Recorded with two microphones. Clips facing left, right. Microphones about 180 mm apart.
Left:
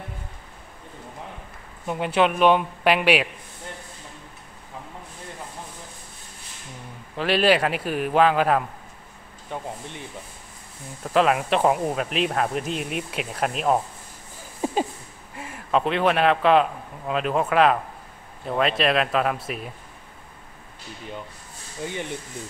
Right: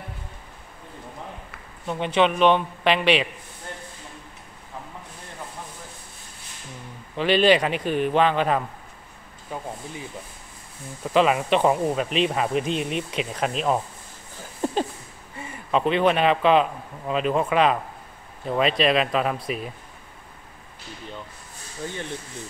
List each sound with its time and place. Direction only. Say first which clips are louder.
1.9 s a man's voice: even; 5° left (ahead or behind)
7.2 s speech: right 2 dB; 5° left (ahead or behind)
11.1 s speech: right 1 dB; centre (ahead or behind)
14.6 s a sound: even; 5° left (ahead or behind)
15.3 s a man's voice: left 1 dB; 5° left (ahead or behind)
21.8 s a man's voice: left 2 dB; 15° left (ahead or behind)